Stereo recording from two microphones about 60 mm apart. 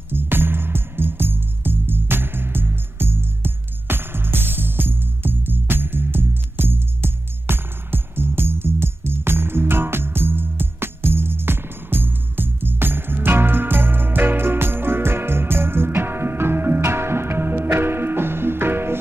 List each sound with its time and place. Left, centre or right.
0.1 s music: right